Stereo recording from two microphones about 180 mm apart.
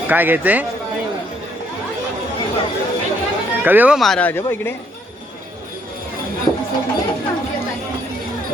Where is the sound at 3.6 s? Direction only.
10° right (ahead or behind); by 4.7 s 10° left (ahead or behind).